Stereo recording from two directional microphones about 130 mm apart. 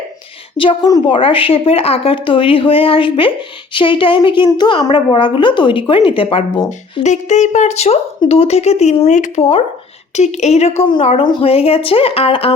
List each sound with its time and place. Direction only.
0.5 s speech: 40° left (ahead or behind)
7.0 s speech: 65° left (ahead or behind)
10.8 s speech: 45° left (ahead or behind)